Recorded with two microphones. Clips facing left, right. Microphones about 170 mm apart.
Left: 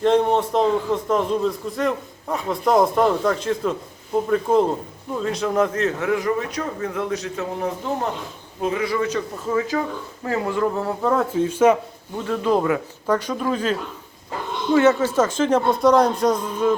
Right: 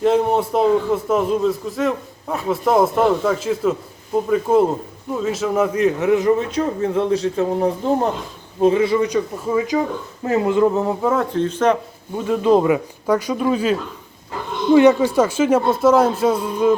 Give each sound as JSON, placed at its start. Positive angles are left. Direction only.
{"t": 0.0, "sound": "a man's voice", "side_deg": -5}
{"t": 11.0, "sound": "a man's voice", "side_deg": 0}
{"t": 11.3, "sound": "speech", "side_deg": 10}
{"t": 12.1, "sound": "speech", "side_deg": -15}